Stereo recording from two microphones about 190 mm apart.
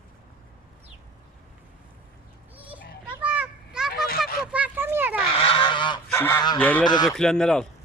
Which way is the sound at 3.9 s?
50° left (ahead or behind).